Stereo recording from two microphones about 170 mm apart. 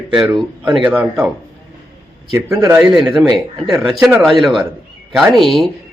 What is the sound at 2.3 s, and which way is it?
Speech, 15° right (ahead or behind).